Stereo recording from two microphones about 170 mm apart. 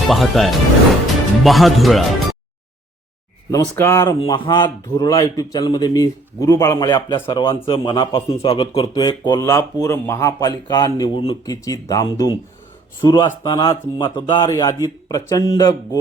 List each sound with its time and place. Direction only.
0.1 s a man's voice: centre (ahead or behind)
3.5 s a man's voice: 15° left (ahead or behind)